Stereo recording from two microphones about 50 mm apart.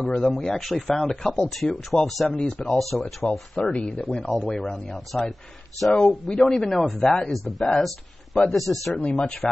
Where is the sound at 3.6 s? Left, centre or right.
Left.